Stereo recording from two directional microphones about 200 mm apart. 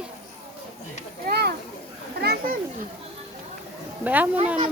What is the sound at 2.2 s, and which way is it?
Children playing, 45° right (ahead or behind).